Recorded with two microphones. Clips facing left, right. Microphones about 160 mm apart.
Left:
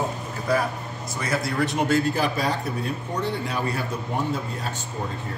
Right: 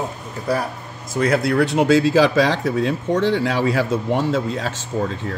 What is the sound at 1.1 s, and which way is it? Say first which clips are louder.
Speech: right 8 dB; 65° right (ahead or behind).